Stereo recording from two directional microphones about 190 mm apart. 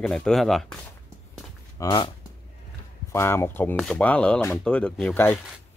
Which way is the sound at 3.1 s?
15° left (ahead or behind).